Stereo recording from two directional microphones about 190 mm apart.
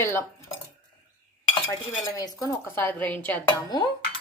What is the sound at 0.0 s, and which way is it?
Dishes, 15° left (ahead or behind).